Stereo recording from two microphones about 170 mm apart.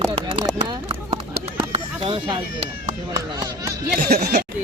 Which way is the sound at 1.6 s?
30° right (ahead or behind).